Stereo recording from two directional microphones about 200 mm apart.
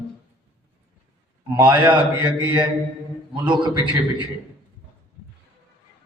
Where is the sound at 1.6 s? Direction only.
25° right (ahead or behind).